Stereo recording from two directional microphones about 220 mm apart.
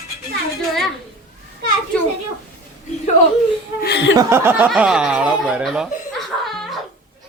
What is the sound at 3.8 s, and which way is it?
Speech, 50° left (ahead or behind).